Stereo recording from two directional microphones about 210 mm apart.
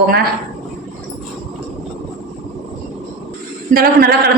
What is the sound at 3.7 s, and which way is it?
Speech, 45° right (ahead or behind).